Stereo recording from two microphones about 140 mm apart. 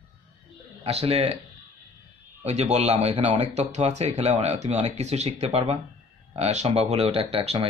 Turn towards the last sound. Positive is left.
turn(degrees=-45)  # may be behind; listen again after turning